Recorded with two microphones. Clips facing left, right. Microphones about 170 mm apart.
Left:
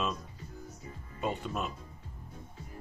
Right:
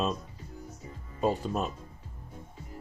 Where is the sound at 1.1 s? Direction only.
35° right (ahead or behind).